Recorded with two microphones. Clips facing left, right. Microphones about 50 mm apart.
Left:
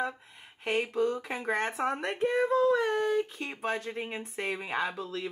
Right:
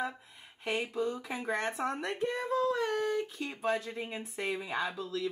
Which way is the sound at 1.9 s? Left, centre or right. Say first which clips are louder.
Left 4 dB; left.